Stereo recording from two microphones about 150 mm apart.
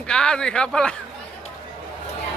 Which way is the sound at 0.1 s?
5° left (ahead or behind).